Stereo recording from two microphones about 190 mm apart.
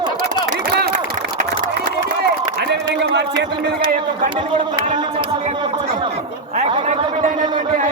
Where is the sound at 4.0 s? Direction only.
25° right (ahead or behind).